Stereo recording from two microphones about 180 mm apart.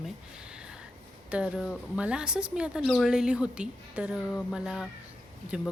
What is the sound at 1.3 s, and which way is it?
Speech, 5° right (ahead or behind).